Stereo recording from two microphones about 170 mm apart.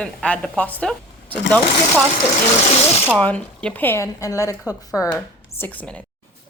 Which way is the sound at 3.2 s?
10° left (ahead or behind).